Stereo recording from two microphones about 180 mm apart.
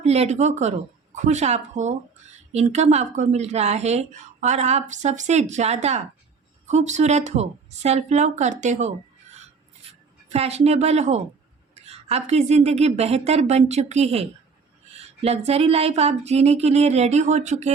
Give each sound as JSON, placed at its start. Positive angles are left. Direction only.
{"t": 0.0, "sound": "a woman's voice", "side_deg": -35}